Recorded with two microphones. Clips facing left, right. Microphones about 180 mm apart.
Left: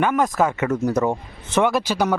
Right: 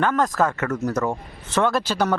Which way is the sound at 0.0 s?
15° left (ahead or behind).